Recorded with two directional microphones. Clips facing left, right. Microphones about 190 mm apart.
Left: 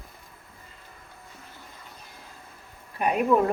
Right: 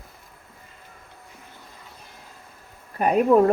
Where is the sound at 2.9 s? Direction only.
40° right (ahead or behind).